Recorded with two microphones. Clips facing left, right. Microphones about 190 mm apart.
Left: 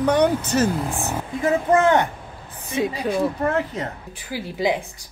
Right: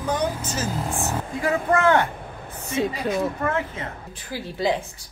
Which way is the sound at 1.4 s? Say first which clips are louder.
Left 4 dB; 20° left (ahead or behind).